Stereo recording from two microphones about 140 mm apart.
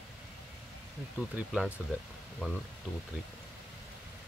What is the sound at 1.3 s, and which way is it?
Speech, 5° right (ahead or behind).